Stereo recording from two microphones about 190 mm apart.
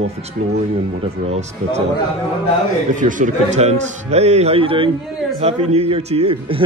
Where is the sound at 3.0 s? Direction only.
40° right (ahead or behind).